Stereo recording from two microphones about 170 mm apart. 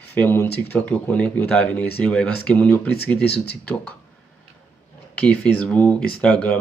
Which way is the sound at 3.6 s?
10° left (ahead or behind).